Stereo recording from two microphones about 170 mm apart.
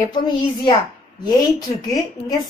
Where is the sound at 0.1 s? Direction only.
25° left (ahead or behind).